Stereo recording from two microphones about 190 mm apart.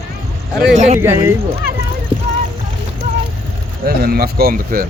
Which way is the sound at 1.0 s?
15° right (ahead or behind).